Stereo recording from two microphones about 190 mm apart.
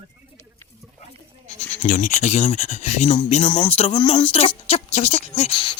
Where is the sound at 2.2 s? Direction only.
35° left (ahead or behind).